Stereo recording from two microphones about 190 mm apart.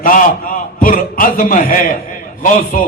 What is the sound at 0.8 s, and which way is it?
A man's voice, 45° left (ahead or behind).